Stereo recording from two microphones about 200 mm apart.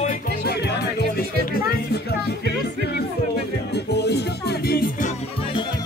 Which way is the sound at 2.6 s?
55° left (ahead or behind).